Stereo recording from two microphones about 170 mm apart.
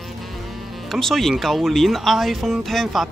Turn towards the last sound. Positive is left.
turn(degrees=0)  # may be behind; listen again after turning